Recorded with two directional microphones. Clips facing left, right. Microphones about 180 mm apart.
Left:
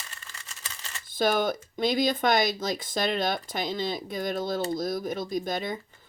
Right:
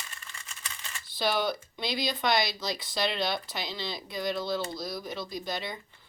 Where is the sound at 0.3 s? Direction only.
35° left (ahead or behind).